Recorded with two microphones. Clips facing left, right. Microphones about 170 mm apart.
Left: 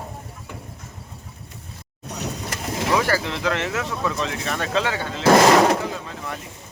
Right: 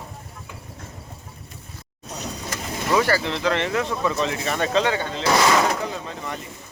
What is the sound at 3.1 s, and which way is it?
Speech, 5° left (ahead or behind).